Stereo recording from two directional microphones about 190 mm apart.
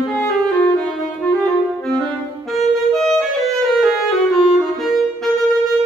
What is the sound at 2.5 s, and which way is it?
Music, centre (ahead or behind).